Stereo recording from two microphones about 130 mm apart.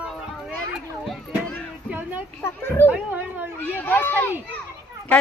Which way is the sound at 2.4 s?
20° left (ahead or behind).